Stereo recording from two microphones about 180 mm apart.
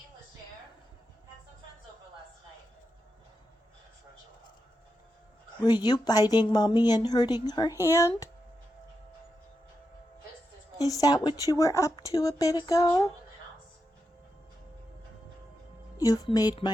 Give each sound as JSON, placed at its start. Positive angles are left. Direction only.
{"t": 5.6, "sound": "speech", "side_deg": 25}
{"t": 10.8, "sound": "speech", "side_deg": 20}
{"t": 16.0, "sound": "speech", "side_deg": 20}